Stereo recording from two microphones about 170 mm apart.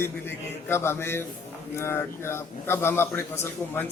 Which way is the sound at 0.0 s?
15° left (ahead or behind).